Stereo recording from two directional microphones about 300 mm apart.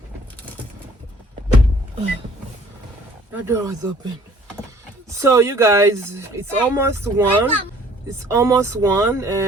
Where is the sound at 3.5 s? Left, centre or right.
Centre.